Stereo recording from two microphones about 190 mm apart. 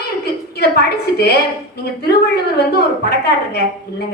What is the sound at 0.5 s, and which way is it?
A woman's voice, 60° left (ahead or behind).